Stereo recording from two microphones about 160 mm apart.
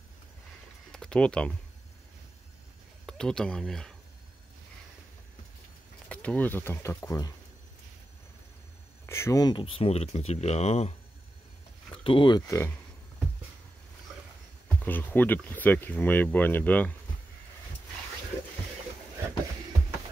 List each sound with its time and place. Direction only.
0.9 s speech: 5° left (ahead or behind)
3.1 s speech: 5° left (ahead or behind)
6.0 s speech: 10° left (ahead or behind)
9.0 s speech: 15° left (ahead or behind)
14.8 s speech: 10° left (ahead or behind)